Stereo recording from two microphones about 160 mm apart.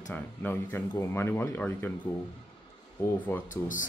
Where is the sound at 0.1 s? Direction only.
10° left (ahead or behind).